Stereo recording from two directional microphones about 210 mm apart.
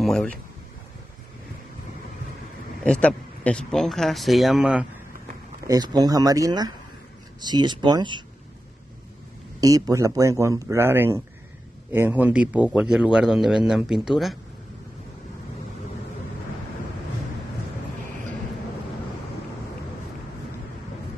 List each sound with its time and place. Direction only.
0.0 s speech: centre (ahead or behind)
2.8 s speech: 5° left (ahead or behind)
5.7 s speech: 20° right (ahead or behind)
9.6 s speech: 15° right (ahead or behind); by 14.4 s centre (ahead or behind)